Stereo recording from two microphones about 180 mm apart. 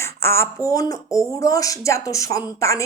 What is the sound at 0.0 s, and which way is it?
A man's voice, 15° left (ahead or behind).